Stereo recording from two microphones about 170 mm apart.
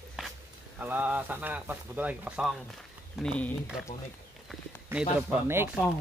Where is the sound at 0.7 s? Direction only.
10° right (ahead or behind).